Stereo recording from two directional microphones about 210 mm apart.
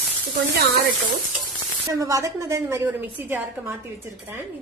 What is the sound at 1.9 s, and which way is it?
A woman's voice, 15° right (ahead or behind).